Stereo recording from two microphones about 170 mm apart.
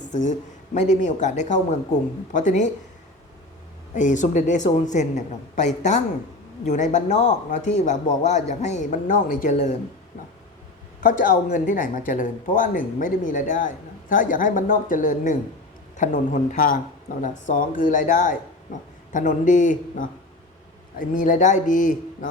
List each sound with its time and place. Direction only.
0.1 s speech: 45° left (ahead or behind)
3.9 s speech: 45° left (ahead or behind)
11.0 s speech: 50° left (ahead or behind)